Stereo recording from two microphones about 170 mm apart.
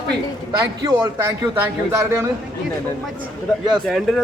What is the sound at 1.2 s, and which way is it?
Speech, 10° right (ahead or behind).